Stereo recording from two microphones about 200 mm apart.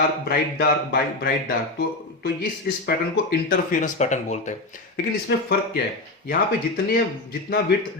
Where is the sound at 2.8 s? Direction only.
45° left (ahead or behind).